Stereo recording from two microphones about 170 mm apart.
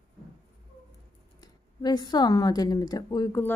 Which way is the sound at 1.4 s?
25° left (ahead or behind).